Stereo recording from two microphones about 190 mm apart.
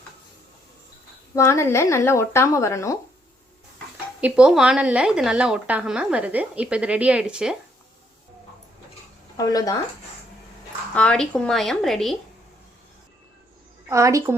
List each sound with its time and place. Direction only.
1.4 s speech: 15° left (ahead or behind)
4.2 s a woman's voice: 5° right (ahead or behind)
9.4 s speech: 20° left (ahead or behind)
10.9 s a woman's voice: 5° left (ahead or behind)
13.9 s a woman's voice: 15° right (ahead or behind)